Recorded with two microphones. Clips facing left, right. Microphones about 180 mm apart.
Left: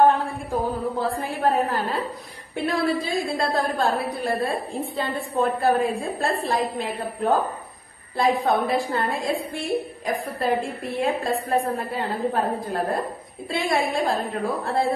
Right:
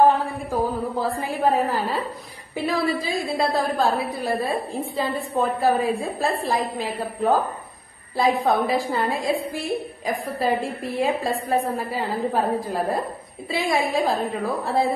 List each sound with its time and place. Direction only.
0.9 s a woman's voice: centre (ahead or behind)